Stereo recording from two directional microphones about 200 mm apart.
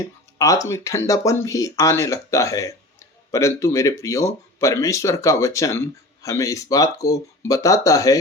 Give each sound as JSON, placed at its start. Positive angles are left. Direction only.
{"t": 0.0, "sound": "speech", "side_deg": 15}